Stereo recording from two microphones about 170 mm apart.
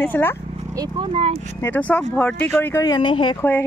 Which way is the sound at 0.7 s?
30° right (ahead or behind).